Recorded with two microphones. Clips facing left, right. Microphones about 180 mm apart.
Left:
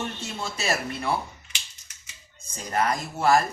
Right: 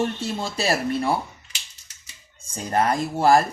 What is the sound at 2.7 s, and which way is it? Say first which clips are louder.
Speech: right 4 dB; 35° right (ahead or behind).